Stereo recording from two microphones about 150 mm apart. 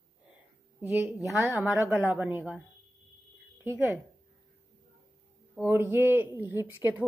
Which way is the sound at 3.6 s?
15° right (ahead or behind).